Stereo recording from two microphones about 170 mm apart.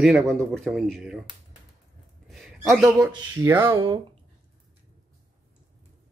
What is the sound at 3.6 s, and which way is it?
Speech, 30° right (ahead or behind).